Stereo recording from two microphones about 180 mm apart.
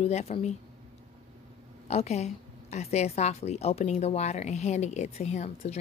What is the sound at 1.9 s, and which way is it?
A woman's voice, 35° left (ahead or behind).